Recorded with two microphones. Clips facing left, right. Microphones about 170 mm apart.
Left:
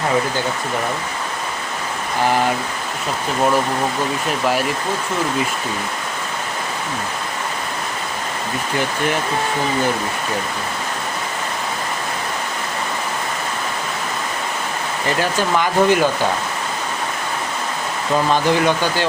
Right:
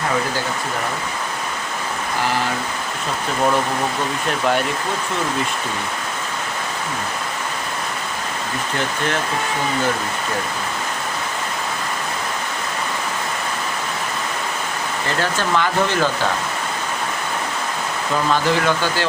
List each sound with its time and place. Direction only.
15.2 s speech: 15° left (ahead or behind)
18.3 s speech: 15° left (ahead or behind)